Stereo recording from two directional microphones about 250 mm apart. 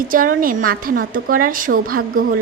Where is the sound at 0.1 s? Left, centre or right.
Right.